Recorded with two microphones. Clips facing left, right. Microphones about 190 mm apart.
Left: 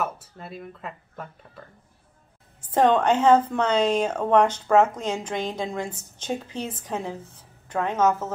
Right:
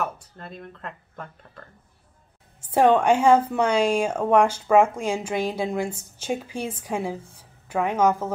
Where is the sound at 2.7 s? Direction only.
10° right (ahead or behind).